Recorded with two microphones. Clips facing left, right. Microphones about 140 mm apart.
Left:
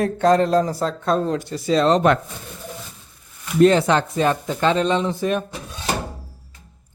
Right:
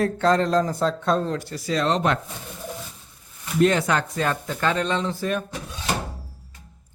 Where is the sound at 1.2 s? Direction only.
20° left (ahead or behind).